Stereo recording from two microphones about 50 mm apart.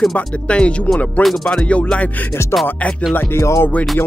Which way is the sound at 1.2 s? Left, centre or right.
Centre.